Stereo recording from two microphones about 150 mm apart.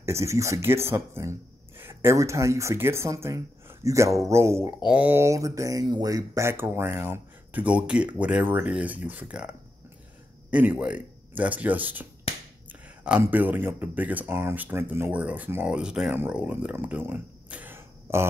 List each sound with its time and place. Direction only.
0.0 s speech: 20° right (ahead or behind)
13.2 s speech: 10° right (ahead or behind)